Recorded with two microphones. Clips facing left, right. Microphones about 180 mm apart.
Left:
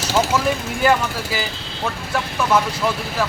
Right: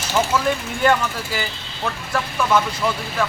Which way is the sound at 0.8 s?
Centre (ahead or behind).